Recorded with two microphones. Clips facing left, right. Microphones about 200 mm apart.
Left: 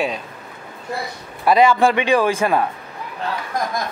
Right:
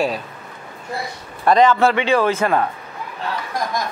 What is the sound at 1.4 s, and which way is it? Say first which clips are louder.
A man's voice: even; 10° left (ahead or behind).